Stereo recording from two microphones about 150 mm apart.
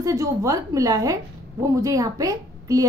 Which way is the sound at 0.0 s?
20° right (ahead or behind).